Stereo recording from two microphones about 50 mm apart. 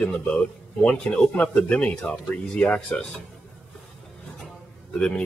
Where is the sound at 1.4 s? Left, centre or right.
Left.